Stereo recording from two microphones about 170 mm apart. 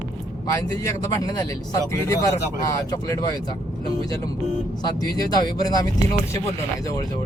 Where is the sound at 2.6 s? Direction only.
20° left (ahead or behind).